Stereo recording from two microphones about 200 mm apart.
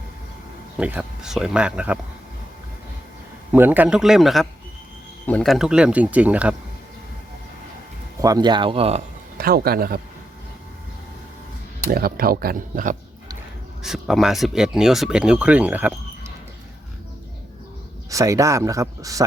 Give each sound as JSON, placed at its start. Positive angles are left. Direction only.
{"t": 0.8, "sound": "speech", "side_deg": -5}
{"t": 3.5, "sound": "speech", "side_deg": -10}
{"t": 8.2, "sound": "speech", "side_deg": -20}
{"t": 9.4, "sound": "speech", "side_deg": -50}
{"t": 11.9, "sound": "speech", "side_deg": -45}
{"t": 13.8, "sound": "speech", "side_deg": 0}
{"t": 18.1, "sound": "speech", "side_deg": -15}